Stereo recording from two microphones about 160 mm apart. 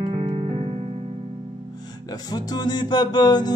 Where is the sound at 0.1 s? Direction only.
35° right (ahead or behind).